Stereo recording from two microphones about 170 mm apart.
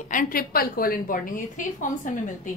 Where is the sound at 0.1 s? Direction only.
55° left (ahead or behind).